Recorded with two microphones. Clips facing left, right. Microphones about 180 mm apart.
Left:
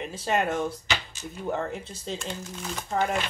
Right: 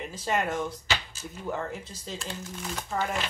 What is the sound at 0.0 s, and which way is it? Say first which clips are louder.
Speech: left 2 dB; 25° left (ahead or behind).